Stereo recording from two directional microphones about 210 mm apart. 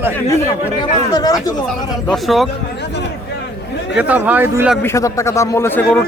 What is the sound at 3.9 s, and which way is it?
Speech, 5° right (ahead or behind).